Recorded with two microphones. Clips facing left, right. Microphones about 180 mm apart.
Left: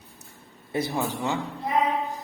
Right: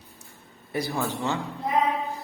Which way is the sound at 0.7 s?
20° left (ahead or behind).